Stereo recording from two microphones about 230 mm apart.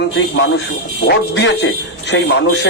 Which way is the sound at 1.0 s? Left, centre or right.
Left.